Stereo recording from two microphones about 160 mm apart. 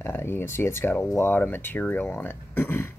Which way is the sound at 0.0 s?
15° left (ahead or behind).